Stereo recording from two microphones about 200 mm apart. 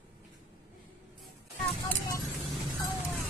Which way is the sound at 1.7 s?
20° left (ahead or behind).